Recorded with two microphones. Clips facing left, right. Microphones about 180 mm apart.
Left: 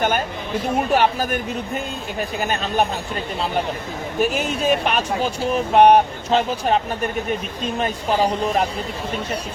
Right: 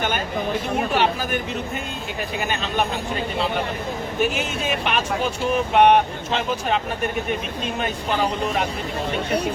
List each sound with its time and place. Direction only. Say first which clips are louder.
0.9 s speech: left 3 dB; 45° left (ahead or behind)
4.2 s speech: left 4 dB; 40° left (ahead or behind)